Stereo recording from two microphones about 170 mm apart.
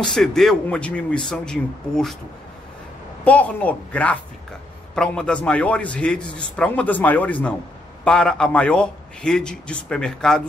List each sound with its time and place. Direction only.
0.0 s a man's voice: 5° left (ahead or behind)
3.3 s a man's voice: 10° left (ahead or behind)